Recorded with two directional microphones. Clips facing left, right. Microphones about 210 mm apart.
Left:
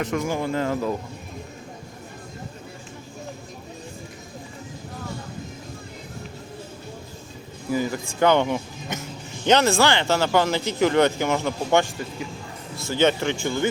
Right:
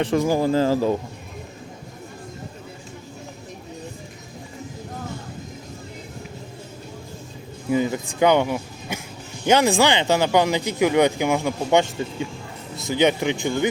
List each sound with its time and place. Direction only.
0.0 s speech: 35° right (ahead or behind)
7.7 s speech: 20° right (ahead or behind)